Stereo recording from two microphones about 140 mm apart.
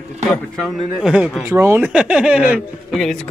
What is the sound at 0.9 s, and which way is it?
A man's voice, 5° right (ahead or behind).